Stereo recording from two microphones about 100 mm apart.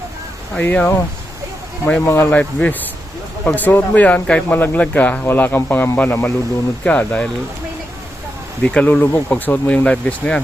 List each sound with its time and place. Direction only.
0.6 s a man's voice: 15° left (ahead or behind)
8.6 s speech: 15° left (ahead or behind)